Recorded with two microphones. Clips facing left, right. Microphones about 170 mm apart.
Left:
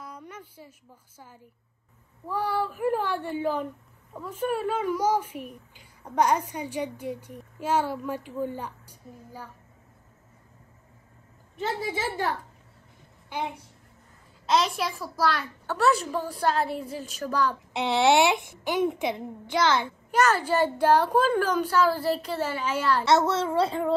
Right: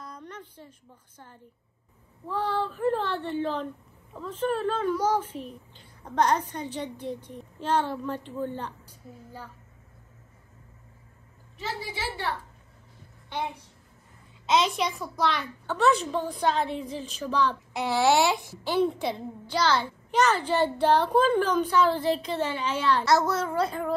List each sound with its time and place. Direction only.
0.0 s a sound: 10° left (ahead or behind)
2.2 s a child's voice: 10° left (ahead or behind)
11.5 s a woman's voice: 50° left (ahead or behind)
14.4 s a child's voice: centre (ahead or behind)
17.7 s a child's voice: 25° left (ahead or behind)
20.1 s a child's voice: 10° left (ahead or behind)
23.0 s a child's voice: 25° left (ahead or behind)